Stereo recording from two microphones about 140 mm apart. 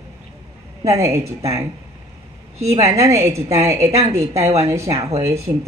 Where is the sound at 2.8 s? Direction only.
20° right (ahead or behind).